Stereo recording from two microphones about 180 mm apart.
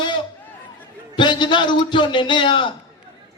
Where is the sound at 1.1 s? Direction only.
25° left (ahead or behind).